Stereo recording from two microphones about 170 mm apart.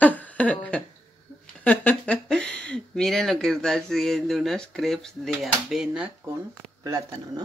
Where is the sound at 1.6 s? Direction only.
10° left (ahead or behind); by 6.4 s 5° right (ahead or behind).